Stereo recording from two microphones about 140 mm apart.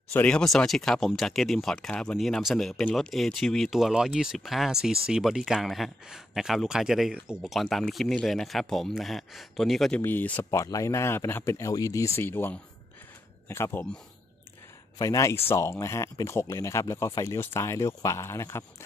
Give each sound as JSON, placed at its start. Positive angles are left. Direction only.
{"t": 0.1, "sound": "speech", "side_deg": 10}
{"t": 15.0, "sound": "speech", "side_deg": 25}